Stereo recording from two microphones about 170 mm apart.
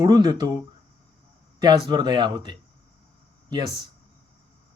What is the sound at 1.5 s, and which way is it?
Speech, 25° right (ahead or behind).